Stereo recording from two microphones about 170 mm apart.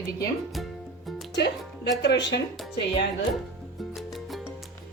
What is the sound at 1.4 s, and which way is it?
Speech, 85° left.